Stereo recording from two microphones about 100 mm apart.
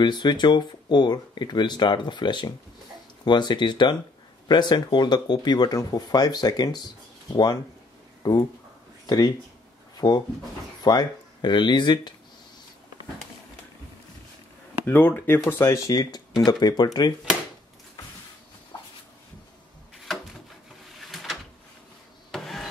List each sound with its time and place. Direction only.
0.0 s speech: 50° left (ahead or behind)
8.2 s speech: 40° left (ahead or behind)
14.9 s speech: 20° left (ahead or behind)
15.9 s speech: 45° left (ahead or behind)
21.0 s a sound: centre (ahead or behind)
22.3 s printer: centre (ahead or behind)